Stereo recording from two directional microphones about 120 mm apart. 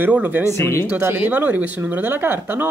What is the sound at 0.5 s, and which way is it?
Speech, 20° left (ahead or behind).